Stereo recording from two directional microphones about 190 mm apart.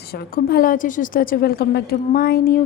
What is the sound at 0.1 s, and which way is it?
A woman's voice, 55° left (ahead or behind).